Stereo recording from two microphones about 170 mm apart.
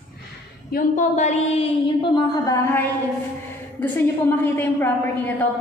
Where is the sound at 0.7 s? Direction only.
45° left (ahead or behind).